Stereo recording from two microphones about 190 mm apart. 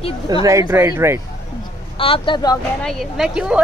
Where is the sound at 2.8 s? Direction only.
Centre (ahead or behind).